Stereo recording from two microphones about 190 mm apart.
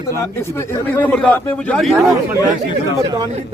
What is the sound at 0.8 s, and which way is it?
A man's voice, 10° left (ahead or behind).